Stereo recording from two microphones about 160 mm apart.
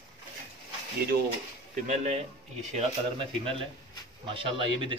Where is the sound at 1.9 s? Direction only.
40° right (ahead or behind).